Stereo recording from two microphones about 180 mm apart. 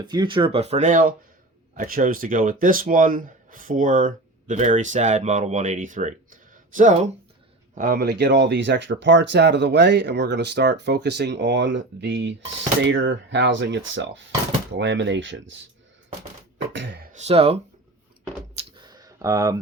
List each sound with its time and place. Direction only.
0.0 s speech: 25° right (ahead or behind); by 7.1 s 40° right (ahead or behind)
7.8 s speech: 60° right (ahead or behind); by 12.3 s 80° right
12.8 s speech: 90° right
16.6 s beatboxing: 80° right
17.1 s speech: 40° right (ahead or behind)
18.5 s computer keyboard: 25° right (ahead or behind)